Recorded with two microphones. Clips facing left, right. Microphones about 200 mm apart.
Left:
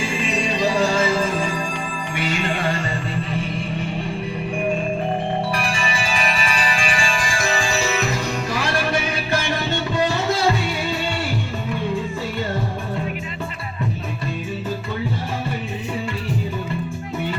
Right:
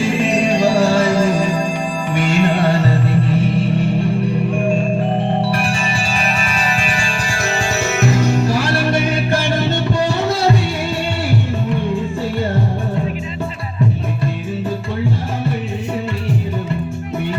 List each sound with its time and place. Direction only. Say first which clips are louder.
0.3 s music: right 5 dB; 50° right (ahead or behind)
2.6 s music: right 8 dB; 65° right (ahead or behind)
6.4 s music: right 3 dB; 45° right (ahead or behind)